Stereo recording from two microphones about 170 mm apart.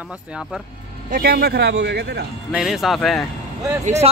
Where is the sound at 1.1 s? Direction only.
65° right (ahead or behind).